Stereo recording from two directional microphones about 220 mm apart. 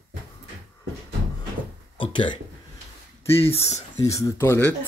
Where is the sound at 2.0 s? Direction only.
20° left (ahead or behind).